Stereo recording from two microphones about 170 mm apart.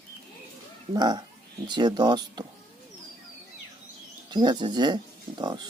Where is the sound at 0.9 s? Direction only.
25° right (ahead or behind).